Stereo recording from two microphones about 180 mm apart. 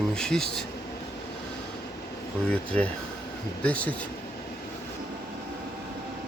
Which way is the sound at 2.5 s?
5° left (ahead or behind).